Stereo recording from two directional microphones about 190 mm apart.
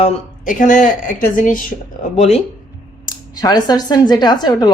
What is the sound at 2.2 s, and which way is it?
Speech, 35° left (ahead or behind).